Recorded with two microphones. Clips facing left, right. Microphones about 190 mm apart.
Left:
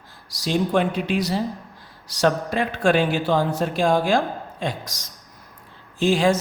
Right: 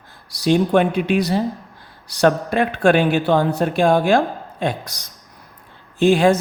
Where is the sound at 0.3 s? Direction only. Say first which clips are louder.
Right 6 dB; 60° right (ahead or behind).